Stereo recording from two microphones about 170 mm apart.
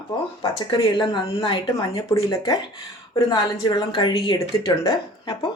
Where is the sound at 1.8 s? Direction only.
20° left (ahead or behind).